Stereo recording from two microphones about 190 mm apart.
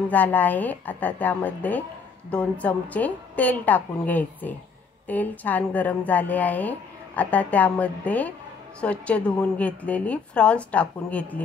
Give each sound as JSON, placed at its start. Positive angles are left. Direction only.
{"t": 0.1, "sound": "a woman's voice", "side_deg": 10}